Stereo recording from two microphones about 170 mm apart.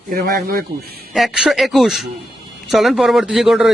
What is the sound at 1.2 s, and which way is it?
Speech, centre (ahead or behind).